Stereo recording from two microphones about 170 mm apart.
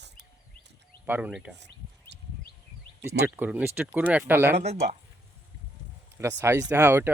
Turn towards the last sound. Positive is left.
turn(degrees=-15)  # may be behind; listen again after turning